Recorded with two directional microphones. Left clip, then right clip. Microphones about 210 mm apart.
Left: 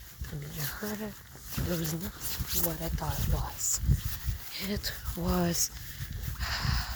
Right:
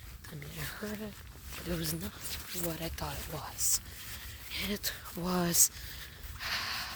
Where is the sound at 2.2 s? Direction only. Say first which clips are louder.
Left 7 dB; 50° left (ahead or behind).